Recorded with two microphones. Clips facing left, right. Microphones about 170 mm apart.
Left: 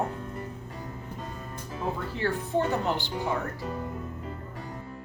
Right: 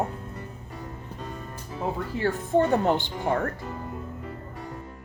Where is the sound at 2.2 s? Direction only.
50° right (ahead or behind).